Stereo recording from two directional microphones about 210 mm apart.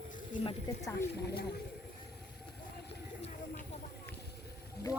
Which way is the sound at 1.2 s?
50° left (ahead or behind).